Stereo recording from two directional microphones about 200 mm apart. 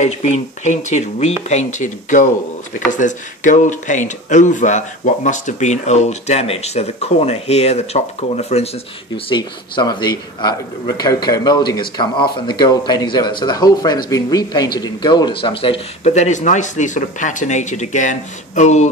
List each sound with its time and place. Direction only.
0.0 s speech: 35° left (ahead or behind)
9.1 s a man's voice: 20° left (ahead or behind)